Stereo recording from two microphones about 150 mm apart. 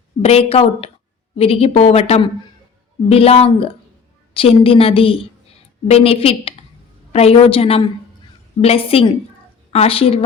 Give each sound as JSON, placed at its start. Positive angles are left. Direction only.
{"t": 0.2, "sound": "a woman's voice", "side_deg": 40}